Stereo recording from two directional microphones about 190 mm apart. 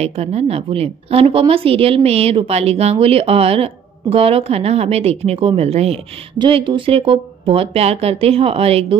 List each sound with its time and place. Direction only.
0.0 s a woman's voice: 35° right (ahead or behind)